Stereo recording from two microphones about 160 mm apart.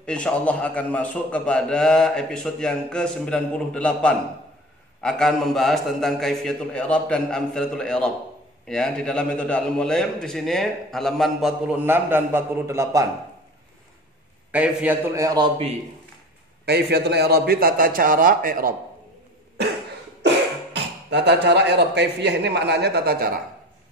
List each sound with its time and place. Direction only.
0.0 s a man's voice: 5° left (ahead or behind); by 13.1 s 20° right (ahead or behind)
14.5 s a man's voice: 10° right (ahead or behind)
15.1 s a man's voice: 25° right (ahead or behind)
16.6 s a man's voice: 90° right; by 18.8 s 60° right (ahead or behind)
20.7 s speech: 90° right; by 23.4 s 70° right (ahead or behind)